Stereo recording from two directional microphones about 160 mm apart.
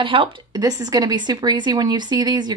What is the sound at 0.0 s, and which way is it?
Speech, 30° right (ahead or behind).